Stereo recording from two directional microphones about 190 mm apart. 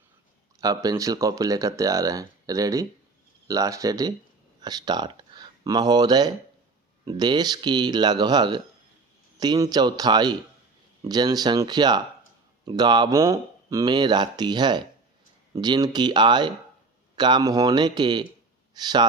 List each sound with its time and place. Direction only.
0.6 s speech: 20° right (ahead or behind)